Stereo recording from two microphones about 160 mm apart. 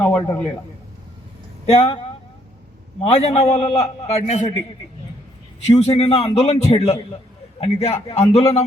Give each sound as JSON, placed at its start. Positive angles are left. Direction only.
{"t": 0.0, "sound": "a man's voice", "side_deg": 15}
{"t": 1.6, "sound": "a man's voice", "side_deg": 35}
{"t": 3.0, "sound": "a man's voice", "side_deg": 40}
{"t": 5.6, "sound": "a man's voice", "side_deg": 40}